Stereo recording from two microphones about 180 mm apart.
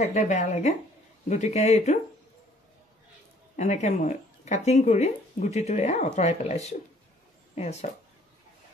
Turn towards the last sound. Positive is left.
turn(degrees=40)  # may be behind; listen again after turning